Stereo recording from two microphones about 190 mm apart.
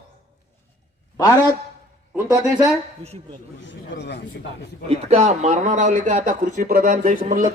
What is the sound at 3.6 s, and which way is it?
Speech, 75° left (ahead or behind).